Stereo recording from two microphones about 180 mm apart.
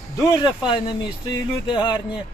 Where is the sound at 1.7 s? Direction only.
25° left (ahead or behind).